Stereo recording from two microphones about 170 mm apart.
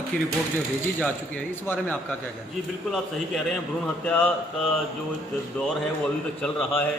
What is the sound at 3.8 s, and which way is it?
Speech, 10° left (ahead or behind).